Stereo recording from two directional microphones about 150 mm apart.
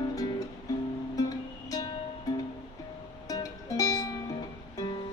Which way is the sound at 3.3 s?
25° left (ahead or behind).